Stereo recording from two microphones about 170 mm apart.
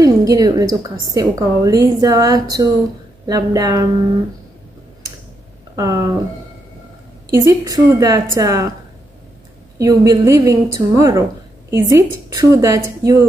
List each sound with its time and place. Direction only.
0.0 s a woman's voice: 20° right (ahead or behind)
5.8 s a woman's voice: 20° right (ahead or behind)
7.2 s a woman's voice: 20° right (ahead or behind)
9.8 s a woman's voice: 20° right (ahead or behind)